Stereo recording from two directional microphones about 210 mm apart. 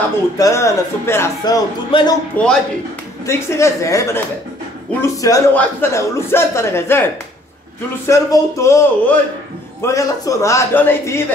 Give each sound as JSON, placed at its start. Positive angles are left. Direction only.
{"t": 0.4, "sound": "a man's voice", "side_deg": 15}
{"t": 2.4, "sound": "a man's voice", "side_deg": 5}
{"t": 8.1, "sound": "a man's voice", "side_deg": 15}